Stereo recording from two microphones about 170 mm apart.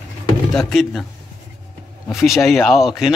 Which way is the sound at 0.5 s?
Centre (ahead or behind).